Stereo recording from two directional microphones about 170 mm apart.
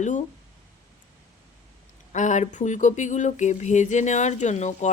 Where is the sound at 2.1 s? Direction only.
45° left (ahead or behind).